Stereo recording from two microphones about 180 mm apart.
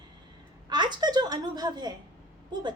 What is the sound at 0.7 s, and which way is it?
A woman's voice, 25° right (ahead or behind).